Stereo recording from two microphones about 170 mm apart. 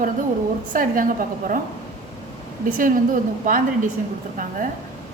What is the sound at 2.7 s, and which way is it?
A woman's voice, 55° right (ahead or behind).